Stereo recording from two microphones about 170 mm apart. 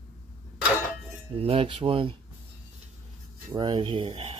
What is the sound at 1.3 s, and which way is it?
Speech, 35° right (ahead or behind).